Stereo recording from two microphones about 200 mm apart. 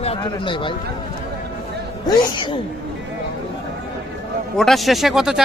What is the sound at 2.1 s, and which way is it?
Speech, 20° left (ahead or behind).